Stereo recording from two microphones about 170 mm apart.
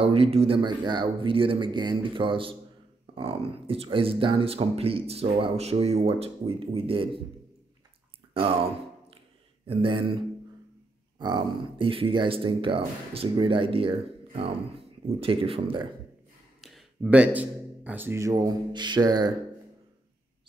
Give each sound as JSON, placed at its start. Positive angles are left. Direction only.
{"t": 0.0, "sound": "speech", "side_deg": -35}
{"t": 8.3, "sound": "speech", "side_deg": -35}
{"t": 9.7, "sound": "speech", "side_deg": -30}
{"t": 11.1, "sound": "speech", "side_deg": -25}
{"t": 16.6, "sound": "speech", "side_deg": 0}